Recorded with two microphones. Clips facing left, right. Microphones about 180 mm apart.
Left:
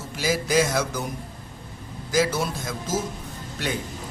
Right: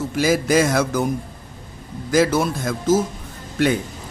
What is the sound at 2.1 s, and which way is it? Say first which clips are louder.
Speech: right 6 dB; 55° right (ahead or behind).